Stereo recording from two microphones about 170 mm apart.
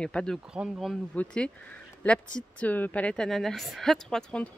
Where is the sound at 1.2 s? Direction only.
5° left (ahead or behind).